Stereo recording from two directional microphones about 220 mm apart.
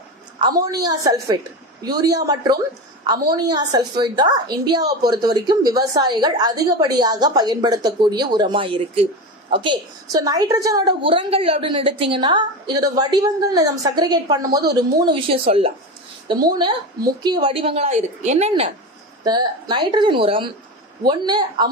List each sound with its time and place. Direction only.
0.4 s a woman's voice: 15° right (ahead or behind)